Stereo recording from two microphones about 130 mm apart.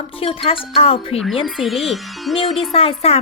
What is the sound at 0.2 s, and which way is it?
A child's voice, 45° left (ahead or behind).